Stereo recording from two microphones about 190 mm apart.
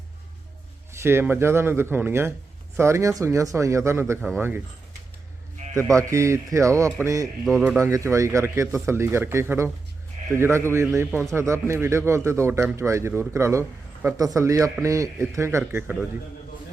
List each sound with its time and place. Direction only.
1.0 s a man's voice: 10° right (ahead or behind)
5.7 s a man's voice: 15° right (ahead or behind)